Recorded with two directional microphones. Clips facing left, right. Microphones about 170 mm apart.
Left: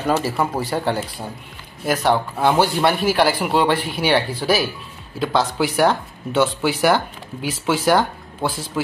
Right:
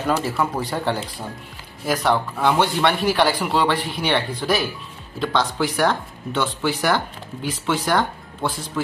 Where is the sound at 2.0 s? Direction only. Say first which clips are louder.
Left 2 dB; 30° left (ahead or behind).